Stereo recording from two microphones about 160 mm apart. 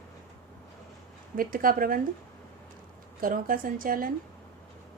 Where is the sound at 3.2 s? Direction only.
60° right (ahead or behind).